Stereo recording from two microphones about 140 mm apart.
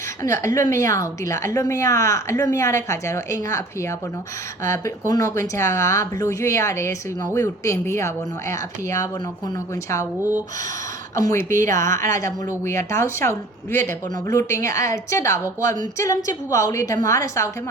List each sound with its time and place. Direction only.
0.2 s a woman's voice: 20° left (ahead or behind)
11.1 s a woman's voice: 20° left (ahead or behind)